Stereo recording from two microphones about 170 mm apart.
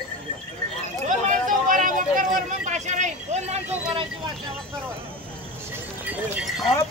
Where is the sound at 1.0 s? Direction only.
50° right (ahead or behind).